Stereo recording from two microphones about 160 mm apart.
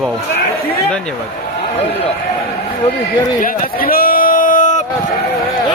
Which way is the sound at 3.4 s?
65° left (ahead or behind).